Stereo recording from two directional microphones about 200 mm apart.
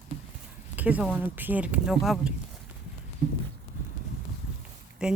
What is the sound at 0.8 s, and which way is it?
Speech, 5° right (ahead or behind).